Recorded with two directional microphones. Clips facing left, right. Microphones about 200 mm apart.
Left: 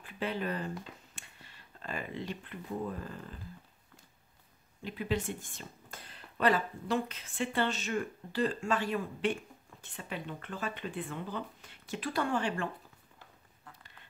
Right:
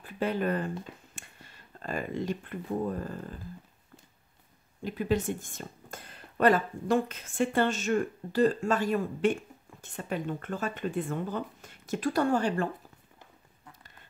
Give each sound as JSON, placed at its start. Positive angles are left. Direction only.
{"t": 0.0, "sound": "speech", "side_deg": -45}
{"t": 4.8, "sound": "speech", "side_deg": -45}